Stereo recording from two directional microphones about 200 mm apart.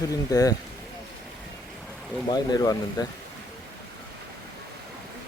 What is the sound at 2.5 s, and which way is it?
Speech, 20° left (ahead or behind).